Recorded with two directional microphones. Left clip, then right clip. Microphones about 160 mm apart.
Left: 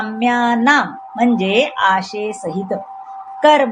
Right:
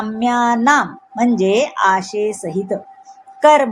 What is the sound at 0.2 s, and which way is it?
Speech, 30° right (ahead or behind).